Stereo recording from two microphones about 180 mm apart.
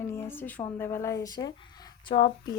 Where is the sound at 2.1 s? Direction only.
35° left (ahead or behind).